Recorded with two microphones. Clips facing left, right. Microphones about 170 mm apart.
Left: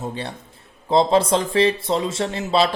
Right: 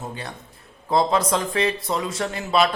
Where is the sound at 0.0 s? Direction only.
30° left (ahead or behind).